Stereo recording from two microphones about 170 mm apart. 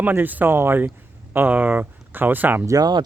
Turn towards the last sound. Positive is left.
turn(degrees=-25)  # may be behind; listen again after turning